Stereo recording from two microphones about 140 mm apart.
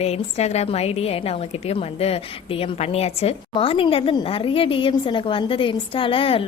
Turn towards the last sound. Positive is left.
turn(degrees=40)  # may be behind; listen again after turning